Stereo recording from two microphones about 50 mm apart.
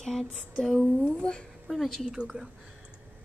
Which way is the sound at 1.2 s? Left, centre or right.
Centre.